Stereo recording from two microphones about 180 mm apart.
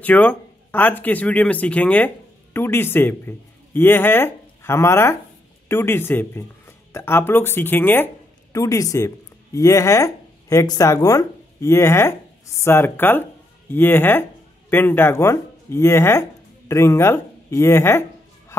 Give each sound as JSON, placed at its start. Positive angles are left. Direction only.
{"t": 0.0, "sound": "speech", "side_deg": 10}